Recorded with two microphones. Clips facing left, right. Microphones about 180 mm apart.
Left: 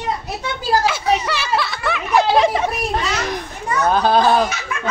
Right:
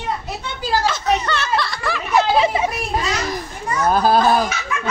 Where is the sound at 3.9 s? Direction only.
5° right (ahead or behind).